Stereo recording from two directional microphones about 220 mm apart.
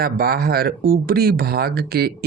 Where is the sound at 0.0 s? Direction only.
45° right (ahead or behind).